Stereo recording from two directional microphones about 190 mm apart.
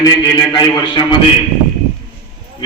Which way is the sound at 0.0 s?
20° left (ahead or behind).